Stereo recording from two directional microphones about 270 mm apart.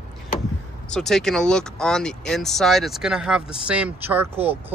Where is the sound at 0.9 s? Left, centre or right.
Centre.